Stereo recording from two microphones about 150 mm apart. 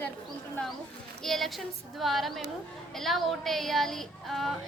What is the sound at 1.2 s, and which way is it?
Child singing, centre (ahead or behind).